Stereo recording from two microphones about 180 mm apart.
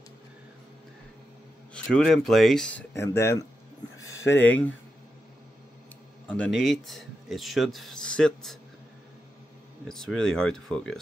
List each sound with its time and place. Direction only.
1.7 s speech: 5° left (ahead or behind)
2.9 s speech: 15° left (ahead or behind)
6.2 s speech: 5° left (ahead or behind)
9.8 s speech: 5° left (ahead or behind)